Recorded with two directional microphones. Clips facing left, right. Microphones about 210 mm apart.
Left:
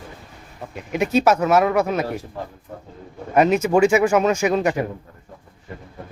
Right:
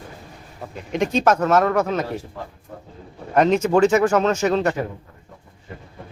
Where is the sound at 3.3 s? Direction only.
10° left (ahead or behind).